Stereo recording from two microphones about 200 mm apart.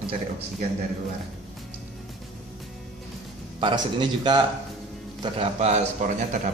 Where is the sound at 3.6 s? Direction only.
25° right (ahead or behind).